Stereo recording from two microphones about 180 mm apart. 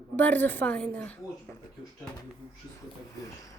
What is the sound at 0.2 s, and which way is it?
Speech, 10° left (ahead or behind).